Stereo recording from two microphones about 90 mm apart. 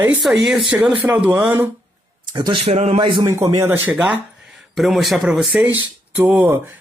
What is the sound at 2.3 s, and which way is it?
Speech, 55° right (ahead or behind).